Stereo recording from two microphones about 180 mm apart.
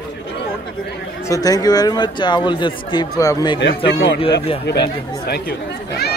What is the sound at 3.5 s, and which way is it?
Speech, 75° left (ahead or behind).